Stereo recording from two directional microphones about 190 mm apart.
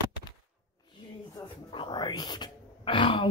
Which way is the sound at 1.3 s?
25° left (ahead or behind).